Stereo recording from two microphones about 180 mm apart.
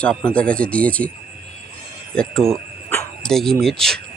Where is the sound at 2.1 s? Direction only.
Centre (ahead or behind).